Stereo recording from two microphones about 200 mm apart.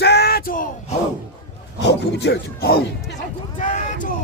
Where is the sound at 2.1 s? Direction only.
60° left (ahead or behind).